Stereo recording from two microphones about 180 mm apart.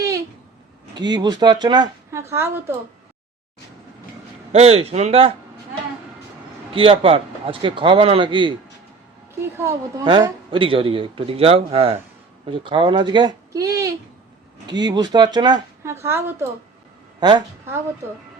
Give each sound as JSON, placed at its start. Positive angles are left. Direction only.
{"t": 0.9, "sound": "speech", "side_deg": -25}
{"t": 4.5, "sound": "a man's voice", "side_deg": -35}
{"t": 6.7, "sound": "speech", "side_deg": -30}
{"t": 9.6, "sound": "a woman's voice", "side_deg": -20}